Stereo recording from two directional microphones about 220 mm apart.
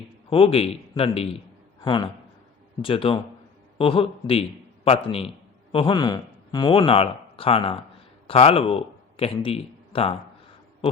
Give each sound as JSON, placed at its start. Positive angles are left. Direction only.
{"t": 0.3, "sound": "a man's voice", "side_deg": 25}